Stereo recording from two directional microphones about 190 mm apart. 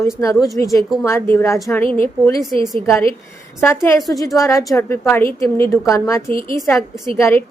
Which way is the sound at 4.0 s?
Centre (ahead or behind).